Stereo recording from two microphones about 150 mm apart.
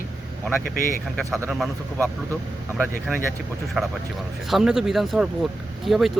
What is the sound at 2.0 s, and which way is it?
Speech, 10° left (ahead or behind).